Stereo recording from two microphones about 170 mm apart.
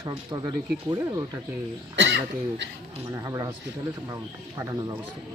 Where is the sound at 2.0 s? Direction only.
90° right.